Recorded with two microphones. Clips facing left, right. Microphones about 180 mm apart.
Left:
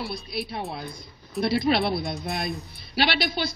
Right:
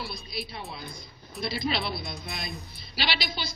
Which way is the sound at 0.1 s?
60° left (ahead or behind).